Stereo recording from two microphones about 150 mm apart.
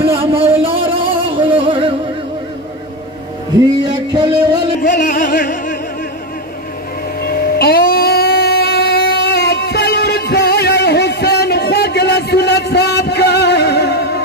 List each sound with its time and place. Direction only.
0.0 s a sound: 40° right (ahead or behind)
3.8 s music: 25° right (ahead or behind)
5.0 s music: 60° left (ahead or behind)
7.2 s music: 90° left